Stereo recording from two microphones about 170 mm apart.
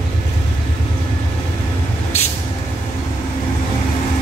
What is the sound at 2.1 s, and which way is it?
Vehicle, 40° left (ahead or behind).